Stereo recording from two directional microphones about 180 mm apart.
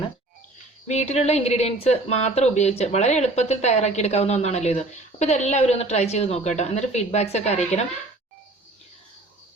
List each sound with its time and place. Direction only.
0.9 s speech: 35° left (ahead or behind)